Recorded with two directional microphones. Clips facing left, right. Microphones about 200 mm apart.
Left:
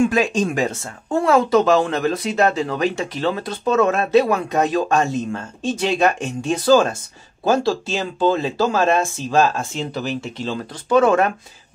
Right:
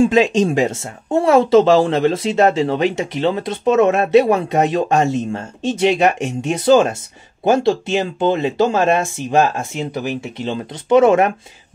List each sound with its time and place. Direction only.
0.0 s speech: 20° right (ahead or behind)
10.5 s speech: 20° right (ahead or behind)